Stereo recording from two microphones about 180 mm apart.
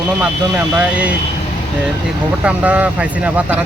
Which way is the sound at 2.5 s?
10° right (ahead or behind).